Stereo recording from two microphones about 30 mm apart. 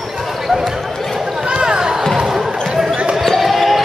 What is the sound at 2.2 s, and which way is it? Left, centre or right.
Basketball bounce, centre.